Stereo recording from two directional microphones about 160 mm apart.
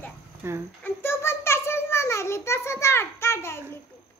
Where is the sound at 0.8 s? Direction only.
15° left (ahead or behind).